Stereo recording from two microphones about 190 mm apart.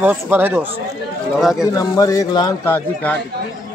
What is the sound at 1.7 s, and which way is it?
A man's voice, 20° left (ahead or behind).